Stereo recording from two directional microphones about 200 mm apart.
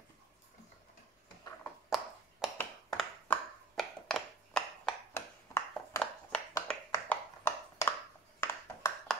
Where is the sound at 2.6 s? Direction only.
5° left (ahead or behind).